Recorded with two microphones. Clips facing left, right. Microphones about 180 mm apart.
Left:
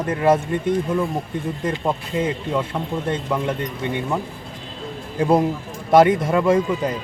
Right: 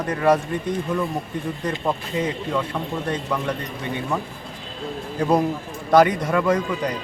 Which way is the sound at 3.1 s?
20° left (ahead or behind).